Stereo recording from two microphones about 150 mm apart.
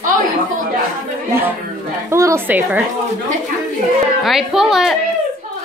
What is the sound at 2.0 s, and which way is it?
Speech, 20° right (ahead or behind).